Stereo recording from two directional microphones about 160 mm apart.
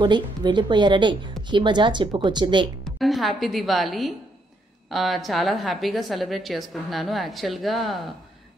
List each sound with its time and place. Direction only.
0.0 s speech: 30° right (ahead or behind)
2.8 s a woman's voice: centre (ahead or behind)